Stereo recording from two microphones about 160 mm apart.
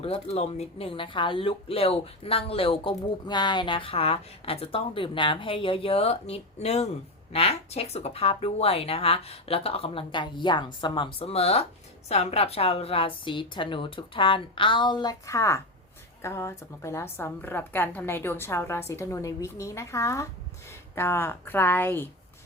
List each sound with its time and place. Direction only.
0.0 s a woman's voice: 40° left (ahead or behind); by 22.1 s 15° left (ahead or behind)